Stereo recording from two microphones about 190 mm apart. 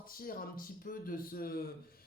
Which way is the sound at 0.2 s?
50° left (ahead or behind).